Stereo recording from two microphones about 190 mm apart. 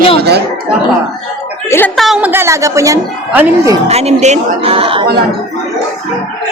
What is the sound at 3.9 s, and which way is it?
A woman's voice, 35° right (ahead or behind).